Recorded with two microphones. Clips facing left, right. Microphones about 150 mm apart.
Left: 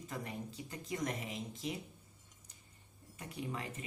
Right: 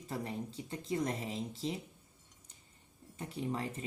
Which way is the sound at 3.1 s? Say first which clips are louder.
Right 5 dB; 30° right (ahead or behind).